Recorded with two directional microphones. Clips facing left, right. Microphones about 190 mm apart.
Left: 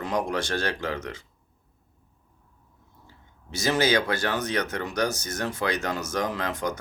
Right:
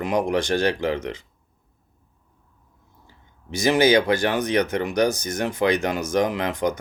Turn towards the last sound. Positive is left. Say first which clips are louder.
# right 5 dB
turn(degrees=-15)  # may be behind; listen again after turning